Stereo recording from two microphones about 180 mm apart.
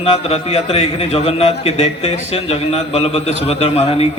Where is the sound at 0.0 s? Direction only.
35° left (ahead or behind).